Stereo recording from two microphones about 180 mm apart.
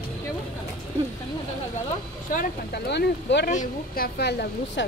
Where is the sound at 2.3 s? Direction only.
55° left (ahead or behind); by 3.4 s 75° left (ahead or behind).